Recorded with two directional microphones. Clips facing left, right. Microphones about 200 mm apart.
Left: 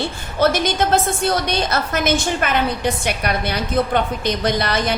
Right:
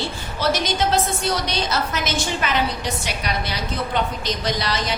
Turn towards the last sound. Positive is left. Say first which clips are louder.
# left 5 dB
turn(degrees=55)  # may be behind; listen again after turning